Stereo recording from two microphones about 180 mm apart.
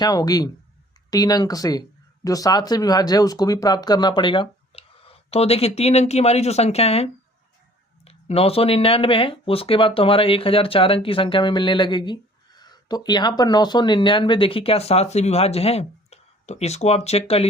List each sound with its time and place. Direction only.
0.0 s speech: 20° left (ahead or behind)